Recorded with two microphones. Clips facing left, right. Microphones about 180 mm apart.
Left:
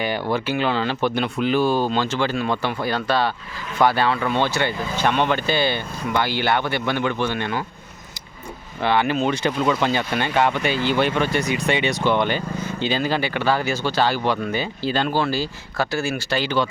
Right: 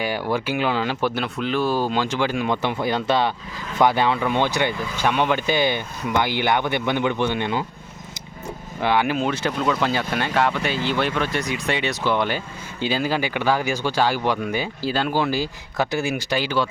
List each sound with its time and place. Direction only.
0.0 s speech: 10° right (ahead or behind)
8.8 s speech: 10° right (ahead or behind)